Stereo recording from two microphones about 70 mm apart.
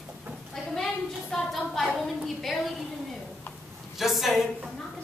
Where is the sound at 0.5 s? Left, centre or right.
Centre.